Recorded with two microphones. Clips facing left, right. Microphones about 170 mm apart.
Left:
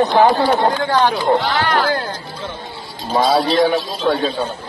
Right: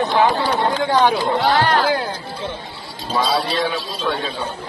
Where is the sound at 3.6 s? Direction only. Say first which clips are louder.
Left 7 dB; 35° left (ahead or behind).